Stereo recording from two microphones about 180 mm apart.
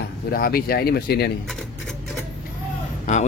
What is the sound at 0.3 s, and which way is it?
Speech, 55° left (ahead or behind).